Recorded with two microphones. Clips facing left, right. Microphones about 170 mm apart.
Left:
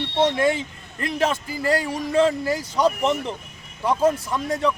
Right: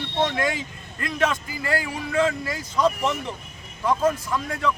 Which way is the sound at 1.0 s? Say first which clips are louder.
Left 2 dB; 30° left (ahead or behind).